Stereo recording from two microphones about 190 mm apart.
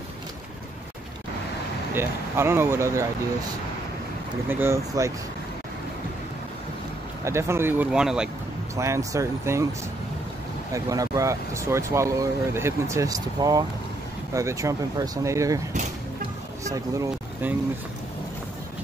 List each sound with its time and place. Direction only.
2.0 s speech: 10° right (ahead or behind)
4.5 s speech: 10° right (ahead or behind)
7.2 s speech: 15° right (ahead or behind)
8.7 s speech: 15° right (ahead or behind)
10.7 s speech: 15° right (ahead or behind)
16.6 s speech: 15° right (ahead or behind)